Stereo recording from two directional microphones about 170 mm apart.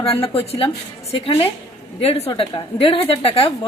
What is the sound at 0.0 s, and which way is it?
Speech, 35° left (ahead or behind).